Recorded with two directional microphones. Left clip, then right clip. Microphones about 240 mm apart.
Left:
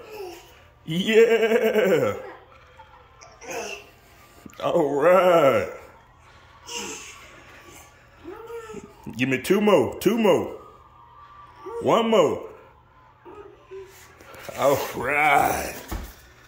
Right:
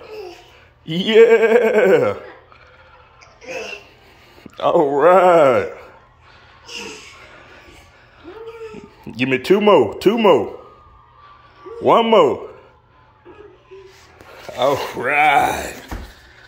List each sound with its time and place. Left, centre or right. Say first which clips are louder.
0.8 s speech: right 7 dB; centre
4.4 s speech: right 7 dB; centre
6.6 s a sound: right 2 dB; centre
8.3 s a sound: right 3 dB; centre
9.0 s speech: right 6 dB; centre
11.8 s speech: right 7 dB; centre
14.4 s speech: right 3 dB; centre